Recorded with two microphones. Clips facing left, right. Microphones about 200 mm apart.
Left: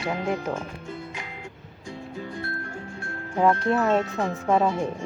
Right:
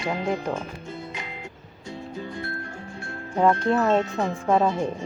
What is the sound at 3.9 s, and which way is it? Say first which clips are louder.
Speech: right 1 dB; 20° right (ahead or behind).